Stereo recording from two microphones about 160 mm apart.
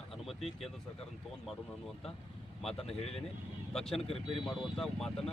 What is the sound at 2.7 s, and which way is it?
Speech, 40° left (ahead or behind).